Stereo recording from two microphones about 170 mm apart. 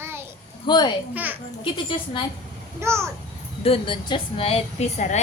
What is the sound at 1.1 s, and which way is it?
Speech, 10° right (ahead or behind).